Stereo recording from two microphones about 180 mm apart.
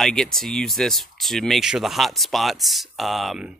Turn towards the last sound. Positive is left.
turn(degrees=0)  # may be behind; listen again after turning